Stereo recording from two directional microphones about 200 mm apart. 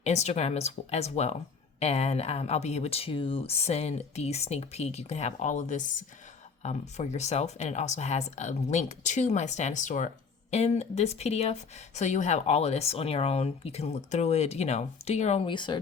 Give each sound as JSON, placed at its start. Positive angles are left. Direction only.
{"t": 0.0, "sound": "speech", "side_deg": 35}